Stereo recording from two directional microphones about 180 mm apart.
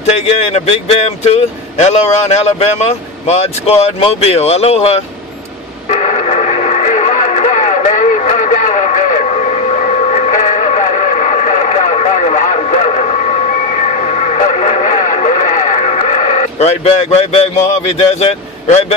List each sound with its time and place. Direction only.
0.6 s speech: 35° left (ahead or behind)
5.9 s radio: 40° left (ahead or behind)